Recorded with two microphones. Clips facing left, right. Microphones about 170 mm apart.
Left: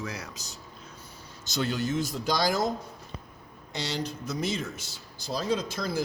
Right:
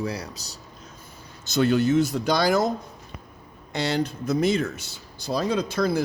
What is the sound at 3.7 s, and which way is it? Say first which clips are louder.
Speech: right 7 dB; 55° right (ahead or behind).